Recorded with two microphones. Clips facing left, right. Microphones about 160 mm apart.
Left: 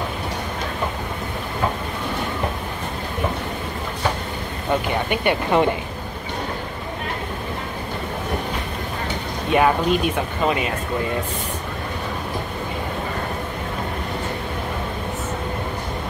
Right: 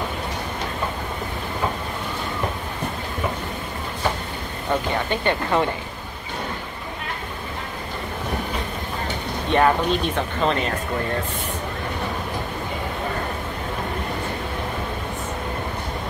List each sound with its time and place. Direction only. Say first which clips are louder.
5.1 s speech: left 3 dB; 15° left (ahead or behind)
9.5 s speech: left 1 dB; 10° left (ahead or behind)